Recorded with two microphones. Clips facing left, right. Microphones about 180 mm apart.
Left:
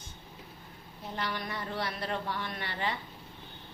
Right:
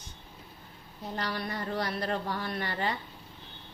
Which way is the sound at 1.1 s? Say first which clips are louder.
Right 2 dB; 40° right (ahead or behind).